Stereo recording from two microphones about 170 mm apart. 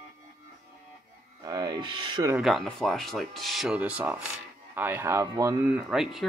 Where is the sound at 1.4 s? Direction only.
25° right (ahead or behind).